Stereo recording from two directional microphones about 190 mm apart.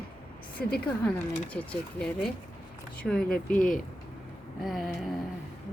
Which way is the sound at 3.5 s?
45° left (ahead or behind).